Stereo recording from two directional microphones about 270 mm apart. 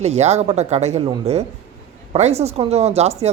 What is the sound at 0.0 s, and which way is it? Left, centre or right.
A woman's voice, right.